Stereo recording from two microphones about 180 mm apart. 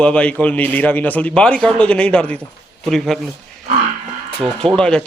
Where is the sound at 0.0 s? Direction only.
5° left (ahead or behind).